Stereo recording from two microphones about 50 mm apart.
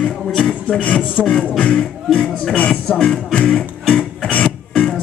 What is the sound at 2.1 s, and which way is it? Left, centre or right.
Speech, centre.